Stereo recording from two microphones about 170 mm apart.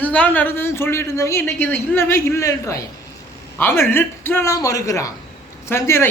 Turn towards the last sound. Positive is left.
turn(degrees=15)  # may be behind; listen again after turning